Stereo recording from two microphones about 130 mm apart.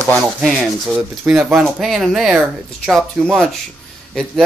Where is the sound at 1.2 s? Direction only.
10° right (ahead or behind).